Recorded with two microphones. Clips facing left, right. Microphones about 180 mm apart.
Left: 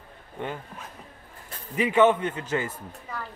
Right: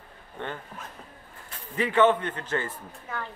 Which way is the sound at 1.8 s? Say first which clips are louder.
Left 2 dB; 10° left (ahead or behind).